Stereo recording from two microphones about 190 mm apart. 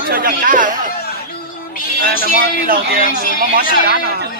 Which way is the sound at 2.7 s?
50° right (ahead or behind).